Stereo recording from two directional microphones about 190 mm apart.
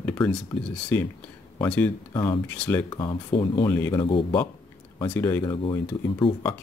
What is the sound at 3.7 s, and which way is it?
Speech, 15° left (ahead or behind).